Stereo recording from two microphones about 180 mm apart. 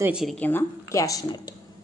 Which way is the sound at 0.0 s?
5° right (ahead or behind).